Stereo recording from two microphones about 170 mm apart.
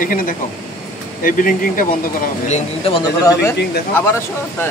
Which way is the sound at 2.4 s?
40° left (ahead or behind).